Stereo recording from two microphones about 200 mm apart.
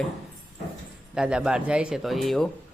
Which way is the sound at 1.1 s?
5° right (ahead or behind).